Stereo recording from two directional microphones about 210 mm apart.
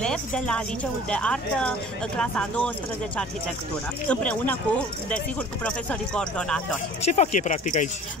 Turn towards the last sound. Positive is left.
turn(degrees=35)  # may be behind; listen again after turning